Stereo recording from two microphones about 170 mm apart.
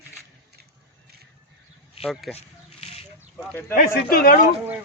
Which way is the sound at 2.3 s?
35° left (ahead or behind).